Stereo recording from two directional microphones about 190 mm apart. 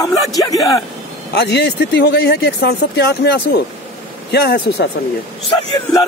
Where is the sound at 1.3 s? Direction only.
60° left (ahead or behind).